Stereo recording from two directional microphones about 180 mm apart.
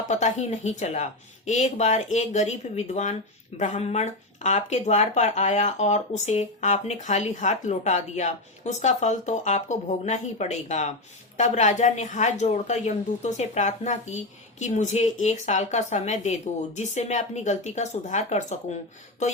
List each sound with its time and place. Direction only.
0.1 s a woman's voice: 40° left (ahead or behind)